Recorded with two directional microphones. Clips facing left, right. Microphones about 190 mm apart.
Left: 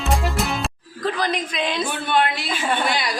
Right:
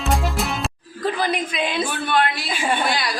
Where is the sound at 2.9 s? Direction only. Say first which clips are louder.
Even; 20° left (ahead or behind).